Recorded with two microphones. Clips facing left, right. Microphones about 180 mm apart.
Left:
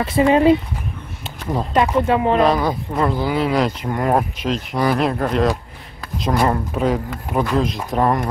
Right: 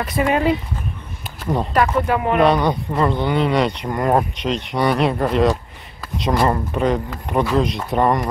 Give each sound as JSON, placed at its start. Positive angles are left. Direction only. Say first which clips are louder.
{"t": 0.0, "sound": "speech", "louder": "left 4 dB", "side_deg": 25}
{"t": 1.4, "sound": "speech", "louder": "right 2 dB", "side_deg": 0}
{"t": 1.7, "sound": "speech", "louder": "left 3 dB", "side_deg": 20}
{"t": 2.4, "sound": "speech", "louder": "right 1 dB", "side_deg": 0}